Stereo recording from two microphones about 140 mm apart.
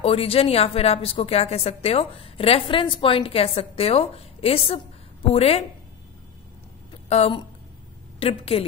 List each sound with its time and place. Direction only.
0.0 s a woman's voice: 45° left (ahead or behind)
7.1 s a woman's voice: 50° left (ahead or behind)